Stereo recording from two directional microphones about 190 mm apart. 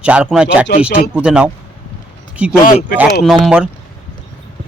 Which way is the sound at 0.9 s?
55° left (ahead or behind).